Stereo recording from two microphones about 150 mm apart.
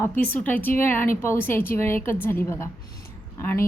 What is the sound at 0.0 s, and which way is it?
A woman's voice, 10° left (ahead or behind).